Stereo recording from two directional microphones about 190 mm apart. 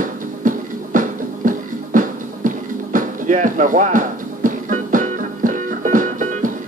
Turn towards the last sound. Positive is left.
turn(degrees=-45)  # may be behind; listen again after turning